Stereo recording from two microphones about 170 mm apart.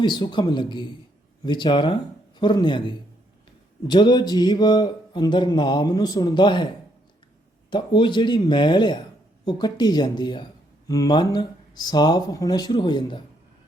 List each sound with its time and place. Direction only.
0.0 s speech: 25° left (ahead or behind)
7.7 s speech: 30° left (ahead or behind)